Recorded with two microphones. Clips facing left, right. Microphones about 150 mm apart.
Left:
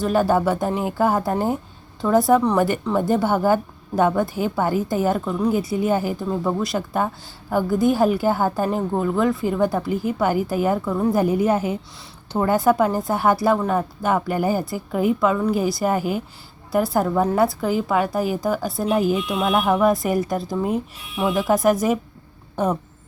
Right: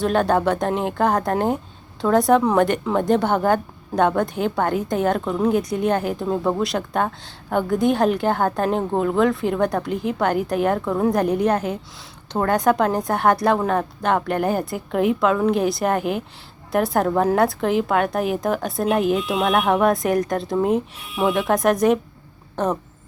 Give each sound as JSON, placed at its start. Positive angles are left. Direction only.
{"t": 0.0, "sound": "a woman's voice", "side_deg": 5}